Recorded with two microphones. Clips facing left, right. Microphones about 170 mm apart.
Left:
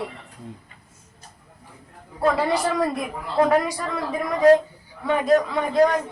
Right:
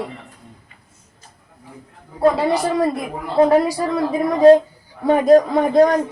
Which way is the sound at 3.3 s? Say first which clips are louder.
Right 5 dB; 30° right (ahead or behind).